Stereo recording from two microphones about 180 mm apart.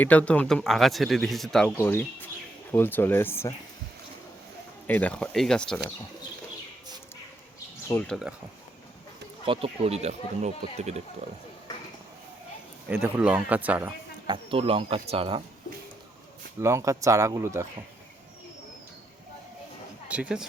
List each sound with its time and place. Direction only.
0.0 s speech: 10° left (ahead or behind)
4.9 s speech: 10° left (ahead or behind)
8.0 s speech: centre (ahead or behind)
9.5 s speech: 30° right (ahead or behind)
12.9 s speech: 10° right (ahead or behind)
14.3 s speech: 30° right (ahead or behind)
16.6 s speech: 15° right (ahead or behind)
20.1 s speech: 5° right (ahead or behind)